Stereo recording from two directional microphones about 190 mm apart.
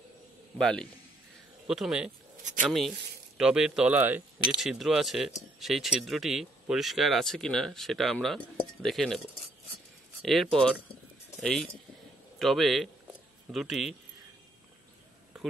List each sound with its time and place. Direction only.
0.6 s speech: 5° left (ahead or behind)
10.2 s speech: centre (ahead or behind)